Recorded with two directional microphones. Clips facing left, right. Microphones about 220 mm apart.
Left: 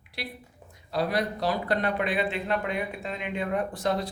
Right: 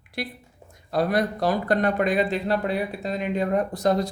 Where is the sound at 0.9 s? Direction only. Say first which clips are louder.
Right 4 dB; 50° right (ahead or behind).